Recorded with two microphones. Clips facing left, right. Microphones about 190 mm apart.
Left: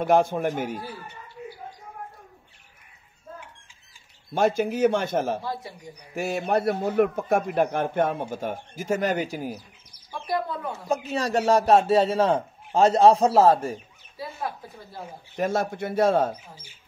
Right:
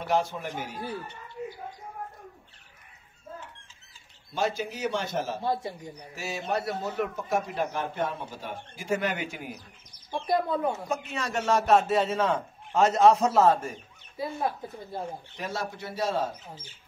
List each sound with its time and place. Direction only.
0.0 s a man's voice: 50° left (ahead or behind)
4.3 s a man's voice: 55° left (ahead or behind); by 9.6 s 35° left (ahead or behind)
10.1 s speech: 25° right (ahead or behind)
10.9 s speech: 35° left (ahead or behind)
15.3 s a man's voice: 50° left (ahead or behind)